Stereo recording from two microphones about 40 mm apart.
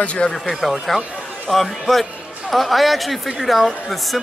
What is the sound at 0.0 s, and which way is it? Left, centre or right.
Speech, left.